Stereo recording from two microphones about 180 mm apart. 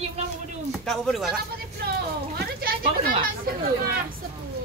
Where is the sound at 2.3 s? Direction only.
60° right (ahead or behind).